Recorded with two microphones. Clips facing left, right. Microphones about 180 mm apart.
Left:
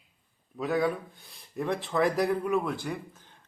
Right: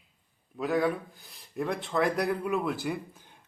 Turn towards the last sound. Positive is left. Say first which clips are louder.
# right 2 dB
turn(degrees=-10)  # may be behind; listen again after turning